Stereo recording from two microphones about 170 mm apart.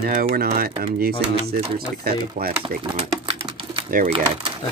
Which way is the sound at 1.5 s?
35° right (ahead or behind).